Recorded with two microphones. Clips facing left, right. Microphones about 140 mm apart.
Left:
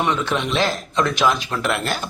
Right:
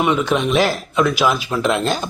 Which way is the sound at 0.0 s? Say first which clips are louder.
Right 4 dB; 10° right (ahead or behind).